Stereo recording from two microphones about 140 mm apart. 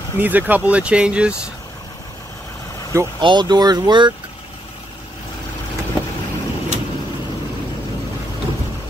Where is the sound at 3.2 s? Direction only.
30° right (ahead or behind).